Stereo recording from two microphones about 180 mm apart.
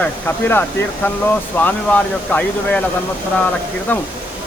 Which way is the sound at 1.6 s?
10° left (ahead or behind).